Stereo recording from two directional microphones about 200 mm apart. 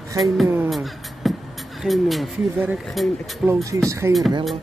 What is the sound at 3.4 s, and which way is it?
Speech, 15° right (ahead or behind).